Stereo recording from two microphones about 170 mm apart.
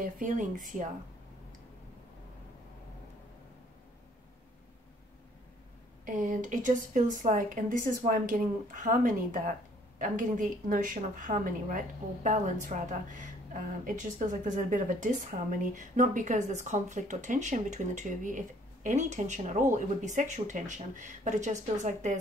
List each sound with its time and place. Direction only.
0.0 s speech: 50° right (ahead or behind)
6.0 s speech: 50° right (ahead or behind)